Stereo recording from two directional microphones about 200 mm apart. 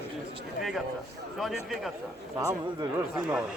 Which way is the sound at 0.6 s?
Centre (ahead or behind).